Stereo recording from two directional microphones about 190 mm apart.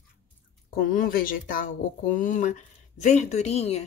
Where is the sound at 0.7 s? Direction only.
50° left (ahead or behind).